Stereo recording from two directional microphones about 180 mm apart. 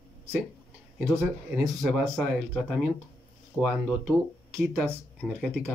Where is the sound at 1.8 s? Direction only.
Centre (ahead or behind).